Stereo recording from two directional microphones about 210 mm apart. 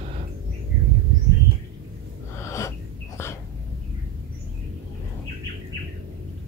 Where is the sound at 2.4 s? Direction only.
15° left (ahead or behind).